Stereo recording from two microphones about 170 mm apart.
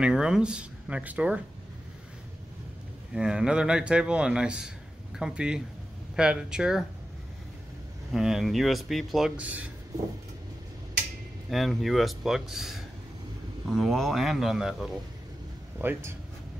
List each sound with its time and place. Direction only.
0.0 s speech: 5° right (ahead or behind)
3.2 s a man's voice: 5° right (ahead or behind)
8.1 s a man's voice: centre (ahead or behind)
11.5 s a man's voice: centre (ahead or behind)